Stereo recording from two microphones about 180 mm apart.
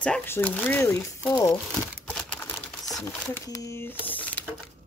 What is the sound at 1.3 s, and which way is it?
Speech, 20° left (ahead or behind).